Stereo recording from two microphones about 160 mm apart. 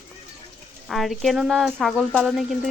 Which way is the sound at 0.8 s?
Centre (ahead or behind).